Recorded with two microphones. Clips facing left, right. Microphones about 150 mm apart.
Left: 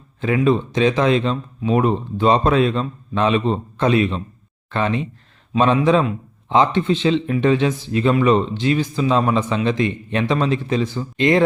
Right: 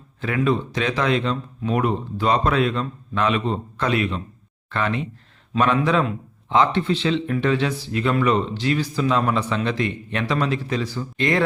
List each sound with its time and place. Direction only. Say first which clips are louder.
0.2 s speech: left 4 dB; 20° left (ahead or behind)